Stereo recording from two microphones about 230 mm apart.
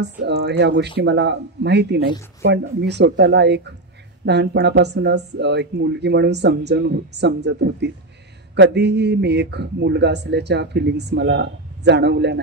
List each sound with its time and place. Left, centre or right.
0.0 s a man's voice: right